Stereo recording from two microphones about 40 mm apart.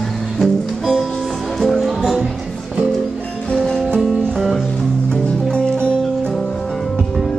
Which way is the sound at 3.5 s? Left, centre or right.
Centre.